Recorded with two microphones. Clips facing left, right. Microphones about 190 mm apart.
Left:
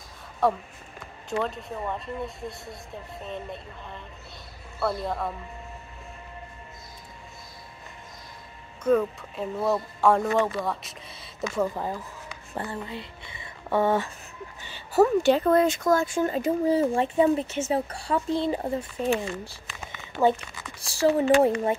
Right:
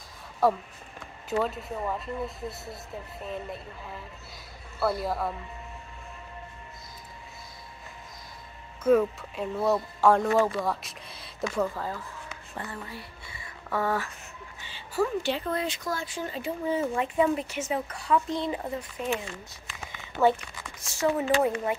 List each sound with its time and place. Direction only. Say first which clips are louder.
0.4 s speech: even; 5° right (ahead or behind)
8.8 s speech: right 1 dB; centre (ahead or behind)
11.6 s speech: left 3 dB; 15° left (ahead or behind)
12.5 s speech: left 6 dB; 25° left (ahead or behind)
15.0 s speech: left 8 dB; 45° left (ahead or behind)
20.8 s speech: left 5 dB; 35° left (ahead or behind)